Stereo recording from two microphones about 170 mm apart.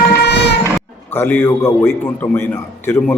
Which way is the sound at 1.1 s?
15° left (ahead or behind).